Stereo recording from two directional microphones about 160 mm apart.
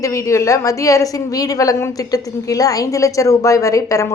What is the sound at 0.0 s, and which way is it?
Speech, 20° left (ahead or behind).